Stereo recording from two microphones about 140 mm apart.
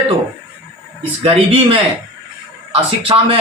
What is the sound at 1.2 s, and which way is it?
A man's voice, 40° right (ahead or behind).